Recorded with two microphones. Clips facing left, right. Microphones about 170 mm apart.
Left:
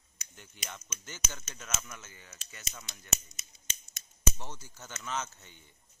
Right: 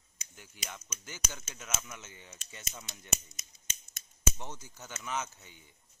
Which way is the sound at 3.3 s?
50° right (ahead or behind).